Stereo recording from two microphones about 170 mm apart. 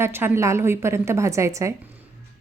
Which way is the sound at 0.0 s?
15° right (ahead or behind).